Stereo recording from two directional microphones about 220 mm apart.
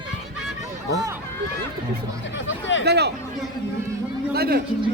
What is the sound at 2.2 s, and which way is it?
Music, 55° left (ahead or behind).